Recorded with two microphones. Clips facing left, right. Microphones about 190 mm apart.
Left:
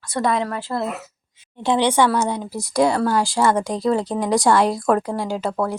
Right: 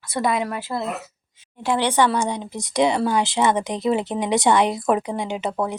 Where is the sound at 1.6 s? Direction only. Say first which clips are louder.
Left 2 dB; 15° left (ahead or behind).